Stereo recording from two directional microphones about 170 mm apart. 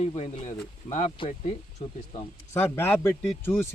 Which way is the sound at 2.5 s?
15° left (ahead or behind).